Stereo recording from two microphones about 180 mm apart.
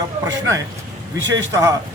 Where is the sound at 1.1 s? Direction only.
90° right.